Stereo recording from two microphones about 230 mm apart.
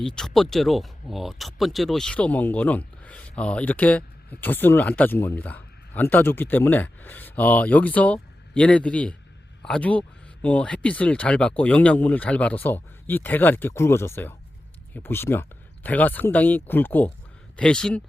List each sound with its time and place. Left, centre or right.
0.0 s speech: centre